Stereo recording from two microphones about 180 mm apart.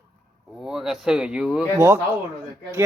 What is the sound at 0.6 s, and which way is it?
Speech, centre (ahead or behind).